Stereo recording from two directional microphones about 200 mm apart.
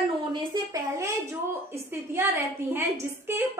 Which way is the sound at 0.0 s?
25° right (ahead or behind).